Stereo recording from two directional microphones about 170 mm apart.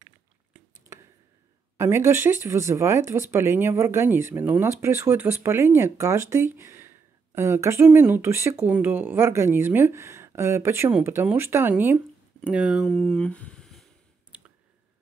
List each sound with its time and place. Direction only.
0.0 s a sound: 15° right (ahead or behind)
1.8 s speech: 15° right (ahead or behind)
12.8 s speech: 5° left (ahead or behind)